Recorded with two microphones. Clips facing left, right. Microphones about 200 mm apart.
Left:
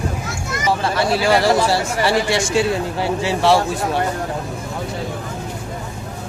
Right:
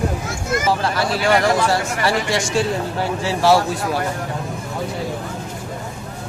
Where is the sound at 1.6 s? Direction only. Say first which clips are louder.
Left 1 dB; 30° left (ahead or behind).